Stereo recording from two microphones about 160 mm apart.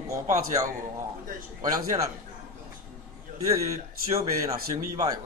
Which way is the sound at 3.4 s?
20° right (ahead or behind).